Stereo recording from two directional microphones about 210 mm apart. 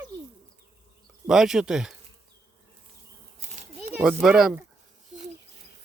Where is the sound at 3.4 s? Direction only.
30° right (ahead or behind).